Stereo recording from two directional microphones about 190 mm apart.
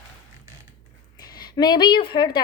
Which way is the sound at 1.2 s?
20° left (ahead or behind).